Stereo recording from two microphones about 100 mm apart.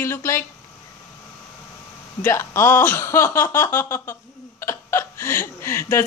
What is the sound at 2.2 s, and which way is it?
Speech, 25° left (ahead or behind).